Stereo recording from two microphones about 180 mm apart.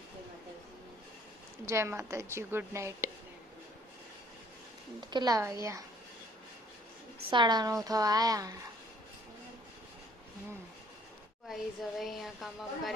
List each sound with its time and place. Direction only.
1.6 s a woman's voice: 15° right (ahead or behind)
4.9 s speech: 25° right (ahead or behind)
7.3 s speech: 25° right (ahead or behind)
11.4 s a woman's voice: centre (ahead or behind)